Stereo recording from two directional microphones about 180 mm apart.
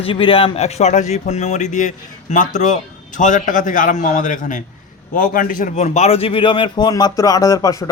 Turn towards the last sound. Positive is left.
turn(degrees=20)  # may be behind; listen again after turning